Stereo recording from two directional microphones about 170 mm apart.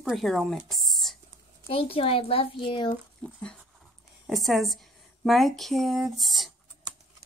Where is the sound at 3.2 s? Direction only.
5° left (ahead or behind).